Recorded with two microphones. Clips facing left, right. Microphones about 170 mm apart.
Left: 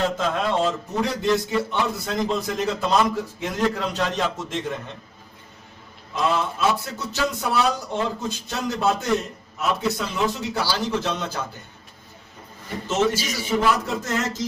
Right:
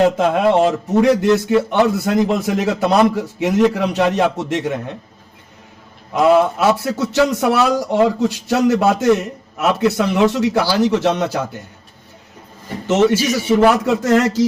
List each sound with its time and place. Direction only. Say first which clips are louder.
0.0 s a man's voice: right 9 dB; 65° right (ahead or behind)
6.1 s a man's voice: right 11 dB; 65° right (ahead or behind)
13.6 s speech: right 7 dB; 80° right